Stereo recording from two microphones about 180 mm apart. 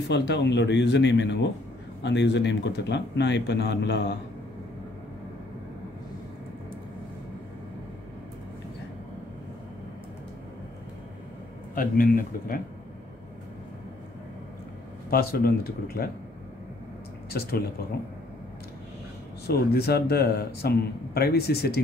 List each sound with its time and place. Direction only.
0.1 s speech: 70° left (ahead or behind)
11.7 s speech: 50° left (ahead or behind)
15.0 s a man's voice: 55° left (ahead or behind)
17.3 s a man's voice: 60° left (ahead or behind)
19.4 s a man's voice: 60° left (ahead or behind)